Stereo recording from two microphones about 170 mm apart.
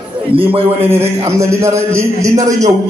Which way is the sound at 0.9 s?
15° right (ahead or behind).